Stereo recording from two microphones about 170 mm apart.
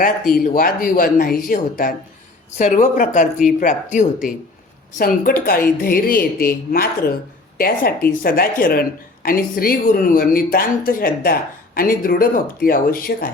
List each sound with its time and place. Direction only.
0.0 s speech: 60° left (ahead or behind)
4.9 s speech: 60° left (ahead or behind)